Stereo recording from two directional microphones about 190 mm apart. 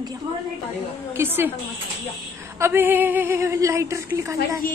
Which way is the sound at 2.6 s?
10° right (ahead or behind).